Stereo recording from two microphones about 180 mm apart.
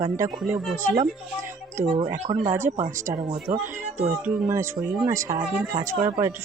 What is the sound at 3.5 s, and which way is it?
Speech, 50° right (ahead or behind).